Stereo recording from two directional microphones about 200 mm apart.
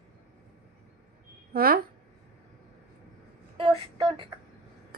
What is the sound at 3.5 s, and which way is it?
Speech, 25° right (ahead or behind).